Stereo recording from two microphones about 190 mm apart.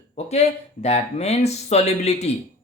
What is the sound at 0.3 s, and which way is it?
Speech, 35° left (ahead or behind).